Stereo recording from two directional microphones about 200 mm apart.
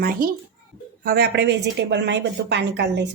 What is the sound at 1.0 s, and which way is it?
A woman's voice, 55° right (ahead or behind).